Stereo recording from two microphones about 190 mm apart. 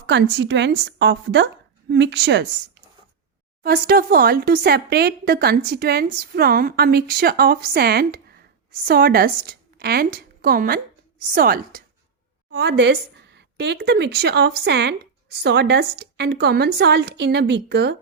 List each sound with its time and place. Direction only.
0.0 s a woman's voice: 65° right (ahead or behind)
3.6 s a woman's voice: 50° right (ahead or behind)
12.5 s a woman's voice: 65° right (ahead or behind)